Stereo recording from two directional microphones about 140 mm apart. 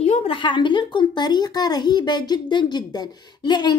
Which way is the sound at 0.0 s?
50° left (ahead or behind).